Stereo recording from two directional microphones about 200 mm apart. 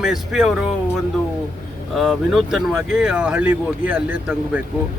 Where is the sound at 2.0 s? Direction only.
Centre (ahead or behind).